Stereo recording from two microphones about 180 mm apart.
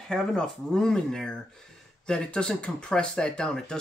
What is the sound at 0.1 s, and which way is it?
Speech, 5° left (ahead or behind).